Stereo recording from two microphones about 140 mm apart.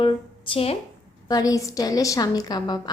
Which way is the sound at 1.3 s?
25° left (ahead or behind).